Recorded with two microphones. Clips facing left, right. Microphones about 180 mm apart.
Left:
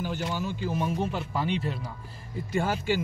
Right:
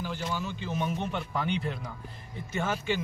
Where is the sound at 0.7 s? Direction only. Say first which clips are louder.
Left 2 dB; 5° left (ahead or behind).